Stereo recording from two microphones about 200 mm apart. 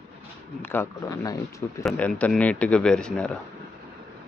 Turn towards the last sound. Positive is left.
turn(degrees=5)  # may be behind; listen again after turning